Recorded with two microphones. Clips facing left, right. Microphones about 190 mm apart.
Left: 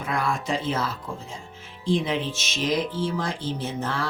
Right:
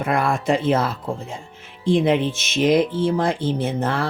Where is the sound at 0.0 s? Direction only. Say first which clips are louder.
Right 6 dB; 60° right (ahead or behind).